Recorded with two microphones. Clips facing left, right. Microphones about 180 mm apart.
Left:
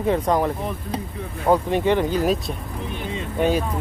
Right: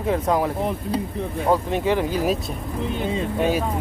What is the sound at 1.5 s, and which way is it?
Speech, centre (ahead or behind).